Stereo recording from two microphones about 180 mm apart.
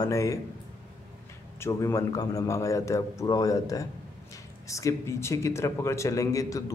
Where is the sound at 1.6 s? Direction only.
15° left (ahead or behind).